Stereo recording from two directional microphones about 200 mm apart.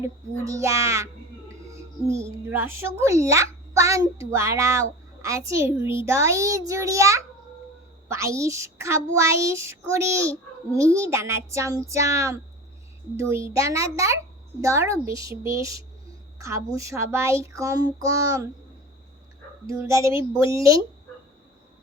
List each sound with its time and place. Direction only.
0.0 s a child's voice: 15° right (ahead or behind)
19.6 s a child's voice: 15° right (ahead or behind)